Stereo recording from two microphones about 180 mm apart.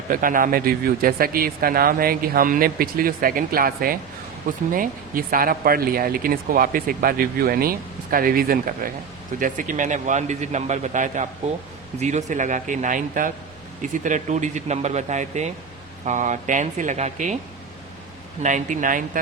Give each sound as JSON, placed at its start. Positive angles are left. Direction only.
{"t": 0.1, "sound": "speech", "side_deg": -50}
{"t": 18.4, "sound": "speech", "side_deg": -45}